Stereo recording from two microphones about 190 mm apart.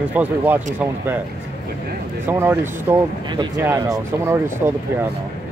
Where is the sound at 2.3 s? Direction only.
10° right (ahead or behind).